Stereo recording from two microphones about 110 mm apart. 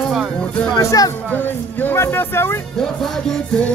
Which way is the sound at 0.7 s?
30° left (ahead or behind).